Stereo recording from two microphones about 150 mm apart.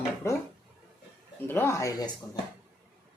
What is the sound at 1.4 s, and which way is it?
Speech, 15° left (ahead or behind).